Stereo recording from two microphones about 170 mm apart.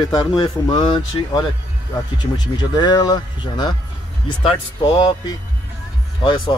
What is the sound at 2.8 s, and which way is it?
Speech, 25° left (ahead or behind).